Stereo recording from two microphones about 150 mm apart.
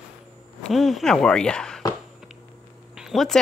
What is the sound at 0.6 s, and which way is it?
Speech, centre (ahead or behind).